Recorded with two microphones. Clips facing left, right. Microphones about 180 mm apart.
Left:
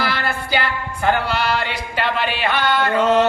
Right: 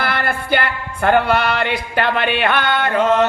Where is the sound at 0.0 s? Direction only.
55° right (ahead or behind).